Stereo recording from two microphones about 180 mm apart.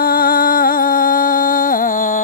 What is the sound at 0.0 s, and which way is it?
Music, 55° left (ahead or behind).